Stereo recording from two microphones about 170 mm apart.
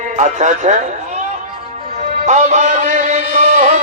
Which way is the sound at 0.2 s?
45° right (ahead or behind).